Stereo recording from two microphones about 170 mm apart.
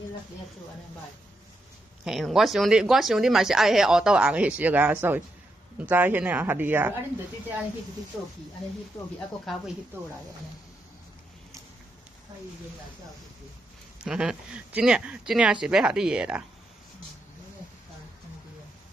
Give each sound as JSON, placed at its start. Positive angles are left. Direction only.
{"t": 2.0, "sound": "speech", "side_deg": 0}
{"t": 9.5, "sound": "speech", "side_deg": 0}
{"t": 14.0, "sound": "speech", "side_deg": -5}